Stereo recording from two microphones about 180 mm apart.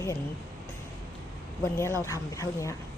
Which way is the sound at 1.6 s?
15° left (ahead or behind).